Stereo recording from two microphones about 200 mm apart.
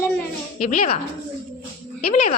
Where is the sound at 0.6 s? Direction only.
40° left (ahead or behind).